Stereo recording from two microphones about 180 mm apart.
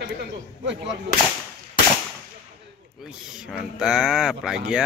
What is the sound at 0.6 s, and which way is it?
Speech, 80° right.